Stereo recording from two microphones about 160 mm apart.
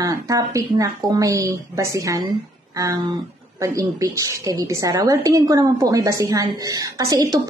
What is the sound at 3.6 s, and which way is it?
A woman's voice, 20° right (ahead or behind).